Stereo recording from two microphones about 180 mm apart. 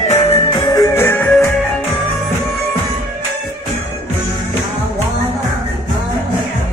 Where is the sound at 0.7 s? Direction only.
15° left (ahead or behind).